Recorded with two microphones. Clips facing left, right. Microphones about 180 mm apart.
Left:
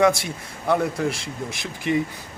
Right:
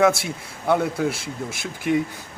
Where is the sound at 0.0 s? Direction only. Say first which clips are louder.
Even; 5° right (ahead or behind).